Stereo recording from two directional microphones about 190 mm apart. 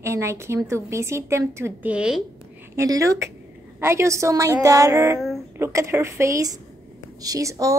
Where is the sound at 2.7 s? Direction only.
15° right (ahead or behind).